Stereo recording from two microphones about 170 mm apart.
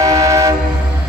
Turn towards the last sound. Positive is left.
turn(degrees=-20)  # may be behind; listen again after turning